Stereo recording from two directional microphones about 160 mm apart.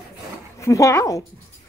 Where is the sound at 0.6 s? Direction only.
20° left (ahead or behind).